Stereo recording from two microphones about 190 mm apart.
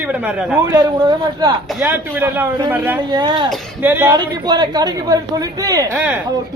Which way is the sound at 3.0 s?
25° right (ahead or behind).